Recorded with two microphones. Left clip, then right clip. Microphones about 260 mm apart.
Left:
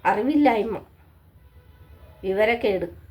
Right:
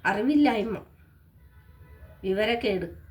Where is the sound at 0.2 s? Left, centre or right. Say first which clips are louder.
Left 4 dB; centre.